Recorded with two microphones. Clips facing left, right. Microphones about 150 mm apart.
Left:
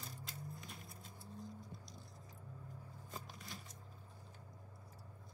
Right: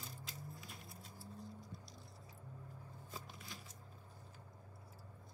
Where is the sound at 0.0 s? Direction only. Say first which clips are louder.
Left 1 dB; centre (ahead or behind).